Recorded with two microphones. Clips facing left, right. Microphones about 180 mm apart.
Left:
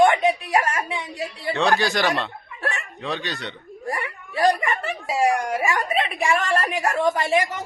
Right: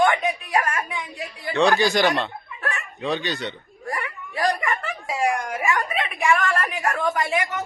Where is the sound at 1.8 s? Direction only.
Centre (ahead or behind).